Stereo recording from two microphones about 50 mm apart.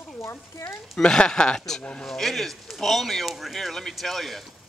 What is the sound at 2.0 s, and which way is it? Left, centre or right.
Speech, centre.